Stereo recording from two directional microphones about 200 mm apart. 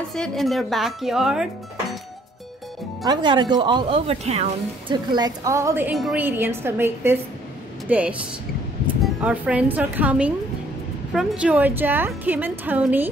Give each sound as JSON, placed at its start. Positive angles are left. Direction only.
{"t": 0.1, "sound": "speech", "side_deg": 0}
{"t": 3.0, "sound": "speech", "side_deg": -20}